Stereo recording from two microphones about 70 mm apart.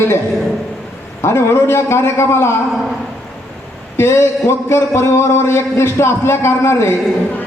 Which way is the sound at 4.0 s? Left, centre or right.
Left.